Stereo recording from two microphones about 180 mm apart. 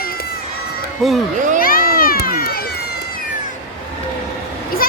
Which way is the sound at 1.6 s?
55° left (ahead or behind).